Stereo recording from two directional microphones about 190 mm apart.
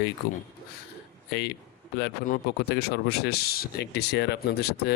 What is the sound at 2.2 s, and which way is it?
Speech, 50° left (ahead or behind).